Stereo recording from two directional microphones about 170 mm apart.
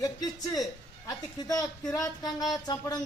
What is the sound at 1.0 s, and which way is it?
Speech, 20° left (ahead or behind).